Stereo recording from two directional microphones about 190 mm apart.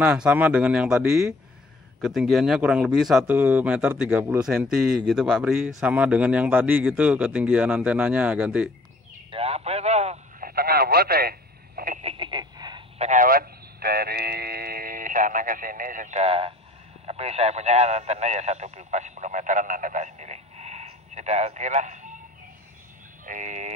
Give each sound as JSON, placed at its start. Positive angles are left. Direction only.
{"t": 0.0, "sound": "a man's voice", "side_deg": -5}
{"t": 9.3, "sound": "a man's voice", "side_deg": -30}
{"t": 10.4, "sound": "radio", "side_deg": -55}
{"t": 12.0, "sound": "a sound", "side_deg": -30}
{"t": 13.0, "sound": "a sound", "side_deg": -45}
{"t": 17.0, "sound": "speech", "side_deg": -35}
{"t": 23.2, "sound": "frog", "side_deg": -45}